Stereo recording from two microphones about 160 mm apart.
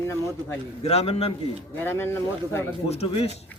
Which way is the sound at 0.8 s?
40° left (ahead or behind).